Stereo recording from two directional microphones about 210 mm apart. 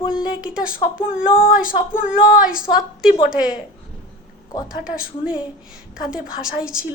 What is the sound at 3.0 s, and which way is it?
Speech, 5° right (ahead or behind).